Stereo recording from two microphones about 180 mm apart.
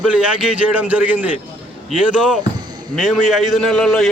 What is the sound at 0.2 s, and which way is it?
A man's voice, 5° right (ahead or behind).